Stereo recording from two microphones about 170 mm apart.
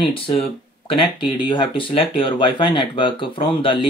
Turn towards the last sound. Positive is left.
turn(degrees=30)  # may be behind; listen again after turning